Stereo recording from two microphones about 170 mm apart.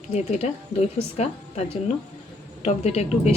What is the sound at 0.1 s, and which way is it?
A woman's voice, 40° left (ahead or behind).